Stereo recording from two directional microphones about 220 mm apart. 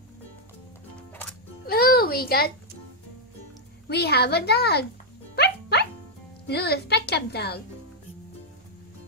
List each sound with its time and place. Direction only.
1.7 s a sound: 45° left (ahead or behind)
3.9 s a woman's voice: 45° left (ahead or behind)
5.3 s music: 50° left (ahead or behind)
6.4 s a woman's voice: 45° left (ahead or behind)